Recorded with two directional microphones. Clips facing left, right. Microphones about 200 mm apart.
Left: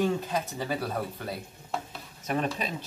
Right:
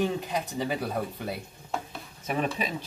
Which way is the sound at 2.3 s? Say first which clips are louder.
Even; 5° right (ahead or behind).